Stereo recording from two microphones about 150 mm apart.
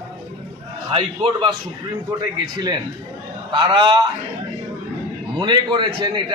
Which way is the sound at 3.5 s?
35° right (ahead or behind).